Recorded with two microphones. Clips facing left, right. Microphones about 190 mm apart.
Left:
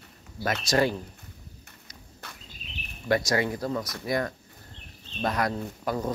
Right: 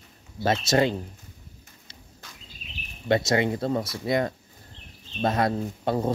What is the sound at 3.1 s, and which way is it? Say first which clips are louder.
Speech: right 3 dB; 25° right (ahead or behind).